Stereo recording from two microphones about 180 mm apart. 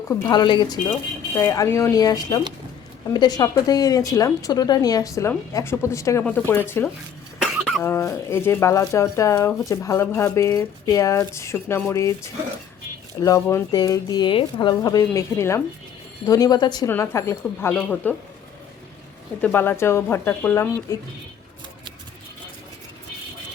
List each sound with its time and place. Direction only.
0.1 s speech: 20° left (ahead or behind)
7.4 s cough: 5° right (ahead or behind)
7.8 s speech: 15° left (ahead or behind)
13.1 s speech: 20° left (ahead or behind)
19.4 s speech: 10° left (ahead or behind)